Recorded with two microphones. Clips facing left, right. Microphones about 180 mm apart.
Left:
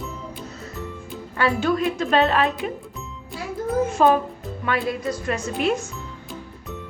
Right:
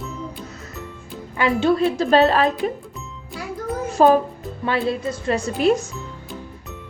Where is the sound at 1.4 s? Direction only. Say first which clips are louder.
Right 3 dB; 25° right (ahead or behind).